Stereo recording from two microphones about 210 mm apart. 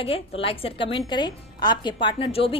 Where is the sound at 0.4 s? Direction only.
25° left (ahead or behind).